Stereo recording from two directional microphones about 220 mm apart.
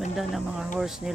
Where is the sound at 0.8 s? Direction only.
Centre (ahead or behind).